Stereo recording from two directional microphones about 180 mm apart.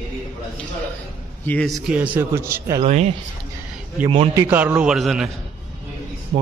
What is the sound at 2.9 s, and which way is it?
Speech, 40° right (ahead or behind).